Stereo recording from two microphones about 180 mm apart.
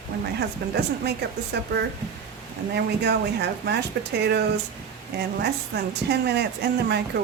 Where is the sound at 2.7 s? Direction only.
70° right (ahead or behind).